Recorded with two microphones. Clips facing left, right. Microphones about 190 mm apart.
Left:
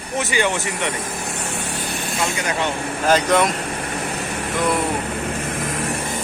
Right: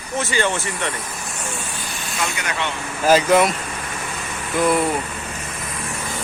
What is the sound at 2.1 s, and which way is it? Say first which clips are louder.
Speech: left 2 dB; 30° left (ahead or behind).